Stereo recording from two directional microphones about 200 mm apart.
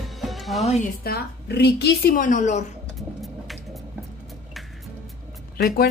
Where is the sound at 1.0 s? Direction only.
55° left (ahead or behind); by 2.7 s 35° left (ahead or behind).